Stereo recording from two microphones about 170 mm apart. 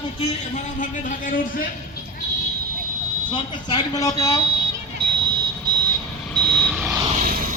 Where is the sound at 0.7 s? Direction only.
50° left (ahead or behind).